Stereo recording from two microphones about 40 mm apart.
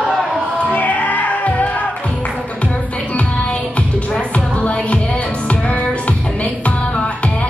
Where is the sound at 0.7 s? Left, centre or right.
Left.